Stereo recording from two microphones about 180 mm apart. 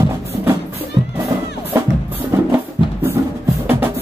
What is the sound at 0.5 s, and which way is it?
Music, 10° right (ahead or behind).